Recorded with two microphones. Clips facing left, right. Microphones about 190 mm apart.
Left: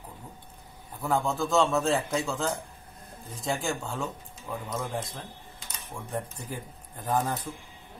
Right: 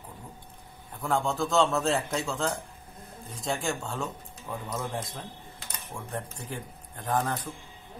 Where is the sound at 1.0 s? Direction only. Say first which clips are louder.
Even; centre (ahead or behind).